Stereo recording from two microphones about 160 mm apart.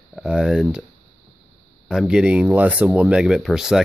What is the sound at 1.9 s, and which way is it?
Speech, 5° right (ahead or behind).